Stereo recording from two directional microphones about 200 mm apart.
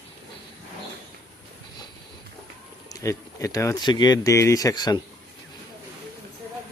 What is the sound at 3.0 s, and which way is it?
Speech, 15° left (ahead or behind).